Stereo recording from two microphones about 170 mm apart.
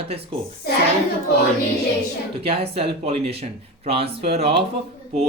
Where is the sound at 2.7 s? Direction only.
35° right (ahead or behind).